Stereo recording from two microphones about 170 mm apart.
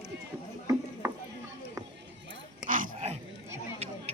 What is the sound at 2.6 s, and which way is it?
Dog, 50° right (ahead or behind).